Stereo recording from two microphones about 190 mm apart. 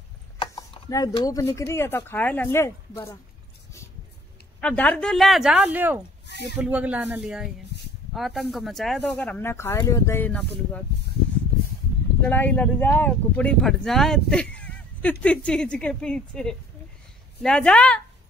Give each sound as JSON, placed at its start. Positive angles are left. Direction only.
{"t": 0.4, "sound": "mechanisms", "side_deg": 20}
{"t": 1.1, "sound": "speech", "side_deg": 20}
{"t": 4.6, "sound": "speech", "side_deg": 10}
{"t": 6.2, "sound": "a sound", "side_deg": 65}
{"t": 6.5, "sound": "speech", "side_deg": -5}
{"t": 12.2, "sound": "speech", "side_deg": 10}